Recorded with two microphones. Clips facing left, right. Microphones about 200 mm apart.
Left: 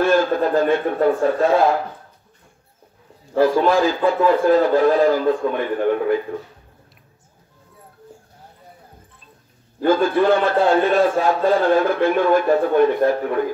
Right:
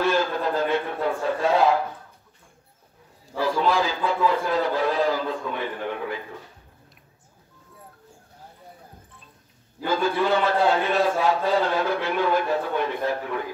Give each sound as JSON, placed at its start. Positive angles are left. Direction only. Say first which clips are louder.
{"t": 0.0, "sound": "a man's voice", "louder": "left 6 dB", "side_deg": 50}
{"t": 3.3, "sound": "a man's voice", "louder": "left 7 dB", "side_deg": 50}
{"t": 9.8, "sound": "a man's voice", "louder": "left 7 dB", "side_deg": 50}